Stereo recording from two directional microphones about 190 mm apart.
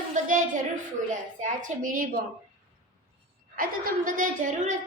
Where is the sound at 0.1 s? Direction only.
40° right (ahead or behind).